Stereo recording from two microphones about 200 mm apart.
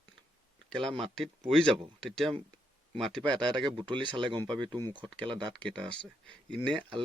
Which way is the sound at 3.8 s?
25° right (ahead or behind).